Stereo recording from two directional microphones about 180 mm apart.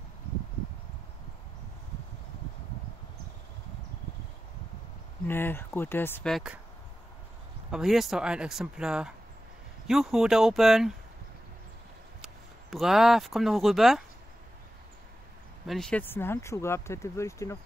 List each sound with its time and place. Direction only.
5.2 s speech: 10° left (ahead or behind)
6.3 s speech: 5° right (ahead or behind)
7.7 s speech: centre (ahead or behind)
12.2 s speech: centre (ahead or behind)
15.6 s speech: centre (ahead or behind)